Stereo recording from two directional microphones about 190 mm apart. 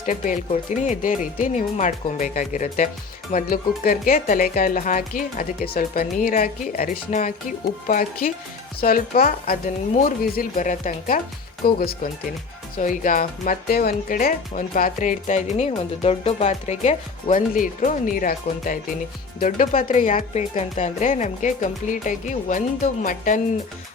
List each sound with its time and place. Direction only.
0.0 s speech: 45° left (ahead or behind)